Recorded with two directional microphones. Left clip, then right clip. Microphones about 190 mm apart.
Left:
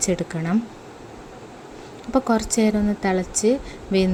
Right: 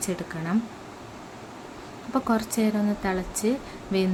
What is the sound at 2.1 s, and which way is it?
A woman's voice, 20° left (ahead or behind).